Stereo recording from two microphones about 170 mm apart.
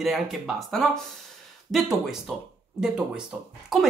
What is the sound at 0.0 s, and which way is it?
Speech, centre (ahead or behind).